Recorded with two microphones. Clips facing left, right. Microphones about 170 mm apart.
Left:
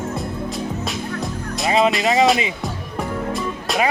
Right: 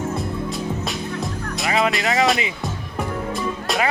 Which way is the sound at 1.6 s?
20° left (ahead or behind).